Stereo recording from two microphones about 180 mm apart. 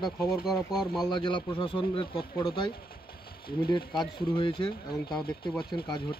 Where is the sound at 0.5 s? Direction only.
Centre (ahead or behind).